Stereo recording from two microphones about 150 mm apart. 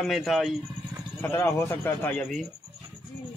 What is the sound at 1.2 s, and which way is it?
A man's voice, 15° left (ahead or behind).